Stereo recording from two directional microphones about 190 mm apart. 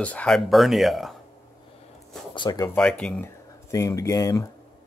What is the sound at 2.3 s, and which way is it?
Speech, 25° left (ahead or behind).